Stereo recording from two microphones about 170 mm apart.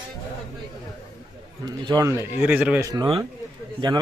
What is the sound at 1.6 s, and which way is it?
A man's voice, 25° right (ahead or behind).